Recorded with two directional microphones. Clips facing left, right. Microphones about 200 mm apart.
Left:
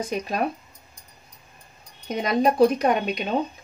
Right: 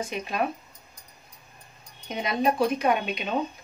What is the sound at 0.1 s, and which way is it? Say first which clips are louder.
Speech: left 5 dB; 40° left (ahead or behind).